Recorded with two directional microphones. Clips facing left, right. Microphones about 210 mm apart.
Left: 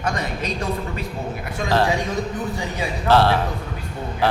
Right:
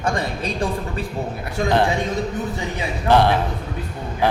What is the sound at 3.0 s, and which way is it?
Speech, 15° right (ahead or behind).